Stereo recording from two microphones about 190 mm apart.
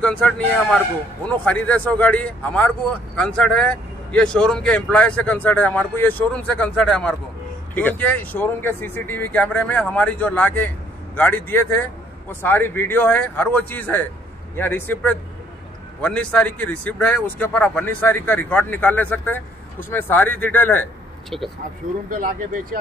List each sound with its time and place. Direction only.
0.0 s speech: 5° left (ahead or behind)
22.1 s speech: 45° right (ahead or behind)